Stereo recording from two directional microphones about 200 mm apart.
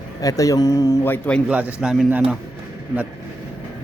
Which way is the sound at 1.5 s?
5° right (ahead or behind).